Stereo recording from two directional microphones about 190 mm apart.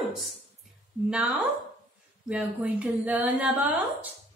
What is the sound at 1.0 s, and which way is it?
A woman's voice, 5° right (ahead or behind).